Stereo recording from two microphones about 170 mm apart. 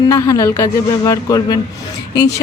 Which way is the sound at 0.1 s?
20° left (ahead or behind).